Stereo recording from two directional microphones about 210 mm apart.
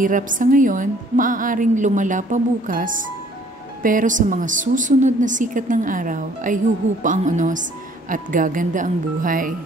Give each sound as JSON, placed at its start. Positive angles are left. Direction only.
{"t": 0.0, "sound": "a woman's voice", "side_deg": -40}